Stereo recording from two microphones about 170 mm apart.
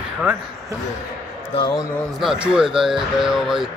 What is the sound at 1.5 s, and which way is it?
Speech, 25° left (ahead or behind).